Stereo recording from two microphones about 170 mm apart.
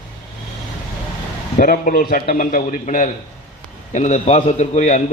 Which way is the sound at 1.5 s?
55° left (ahead or behind).